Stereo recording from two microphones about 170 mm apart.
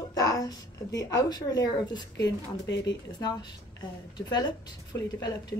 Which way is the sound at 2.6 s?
90° left.